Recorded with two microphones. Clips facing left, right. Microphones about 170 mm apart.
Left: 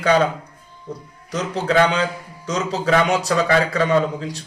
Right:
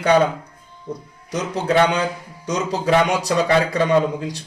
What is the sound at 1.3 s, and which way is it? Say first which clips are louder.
Speech: right 1 dB; 20° right (ahead or behind).